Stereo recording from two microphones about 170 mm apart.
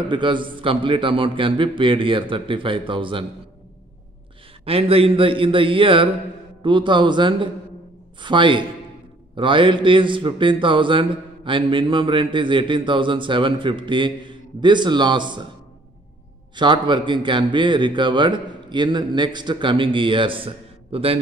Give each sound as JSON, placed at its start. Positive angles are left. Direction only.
{"t": 0.1, "sound": "speech", "side_deg": -30}
{"t": 4.6, "sound": "a man's voice", "side_deg": -35}
{"t": 16.5, "sound": "speech", "side_deg": -25}